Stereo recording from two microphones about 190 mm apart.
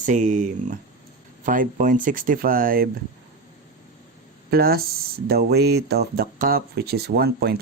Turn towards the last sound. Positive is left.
turn(degrees=-55)  # may be behind; listen again after turning